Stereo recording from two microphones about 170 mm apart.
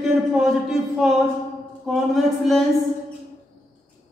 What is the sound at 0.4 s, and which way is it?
A man's voice, centre (ahead or behind).